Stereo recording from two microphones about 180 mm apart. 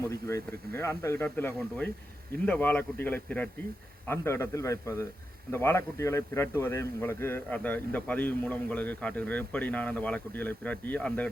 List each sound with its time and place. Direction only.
0.1 s a man's voice: 15° left (ahead or behind)